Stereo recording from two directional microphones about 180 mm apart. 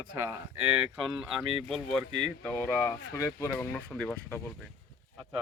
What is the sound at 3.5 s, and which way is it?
Speech, 5° left (ahead or behind).